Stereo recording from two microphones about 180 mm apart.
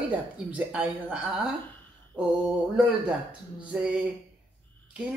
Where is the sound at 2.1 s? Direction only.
25° right (ahead or behind).